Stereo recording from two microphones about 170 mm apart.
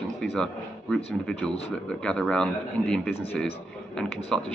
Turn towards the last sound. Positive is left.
turn(degrees=5)  # may be behind; listen again after turning